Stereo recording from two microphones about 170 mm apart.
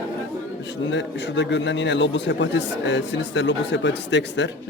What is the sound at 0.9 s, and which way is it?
A man's voice, 90° left.